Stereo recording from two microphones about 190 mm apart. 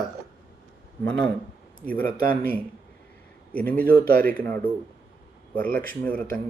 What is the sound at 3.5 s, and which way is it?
Speech, 10° left (ahead or behind).